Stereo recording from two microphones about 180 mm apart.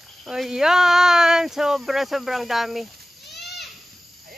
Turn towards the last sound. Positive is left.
turn(degrees=70)  # may be behind; listen again after turning